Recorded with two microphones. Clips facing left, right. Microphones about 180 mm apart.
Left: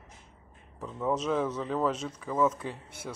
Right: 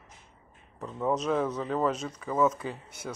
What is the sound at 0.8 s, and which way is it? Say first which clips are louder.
Speech: right 1 dB; centre (ahead or behind).